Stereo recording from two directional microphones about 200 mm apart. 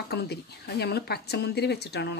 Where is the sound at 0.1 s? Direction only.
55° left (ahead or behind).